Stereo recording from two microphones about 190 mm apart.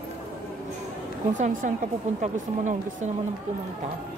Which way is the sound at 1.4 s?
40° right (ahead or behind).